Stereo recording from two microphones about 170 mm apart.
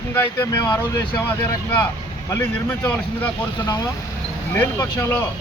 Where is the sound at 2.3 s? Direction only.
15° left (ahead or behind).